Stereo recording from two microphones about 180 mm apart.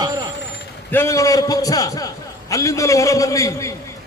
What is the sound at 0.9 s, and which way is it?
A man's voice, 15° left (ahead or behind).